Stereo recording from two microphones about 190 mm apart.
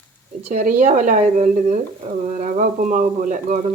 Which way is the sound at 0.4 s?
40° right (ahead or behind).